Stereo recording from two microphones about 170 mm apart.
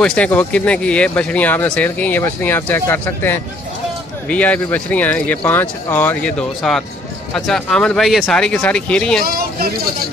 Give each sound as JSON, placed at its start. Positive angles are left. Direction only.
{"t": 0.0, "sound": "speech", "side_deg": 5}
{"t": 9.2, "sound": "speech", "side_deg": -60}